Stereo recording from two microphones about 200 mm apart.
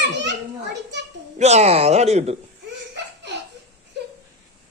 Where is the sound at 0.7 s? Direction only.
60° right (ahead or behind).